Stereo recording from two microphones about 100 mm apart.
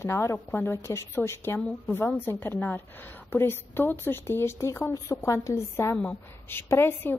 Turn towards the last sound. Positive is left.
turn(degrees=20)  # may be behind; listen again after turning